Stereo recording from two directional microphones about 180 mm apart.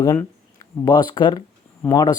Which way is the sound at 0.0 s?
15° left (ahead or behind).